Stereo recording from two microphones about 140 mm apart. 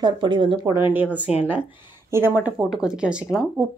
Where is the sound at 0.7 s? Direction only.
15° right (ahead or behind).